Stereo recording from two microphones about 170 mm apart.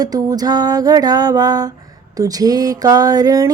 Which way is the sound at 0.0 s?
20° right (ahead or behind).